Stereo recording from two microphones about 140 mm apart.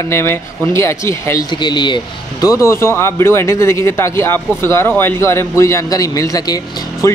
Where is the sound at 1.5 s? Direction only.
35° left (ahead or behind).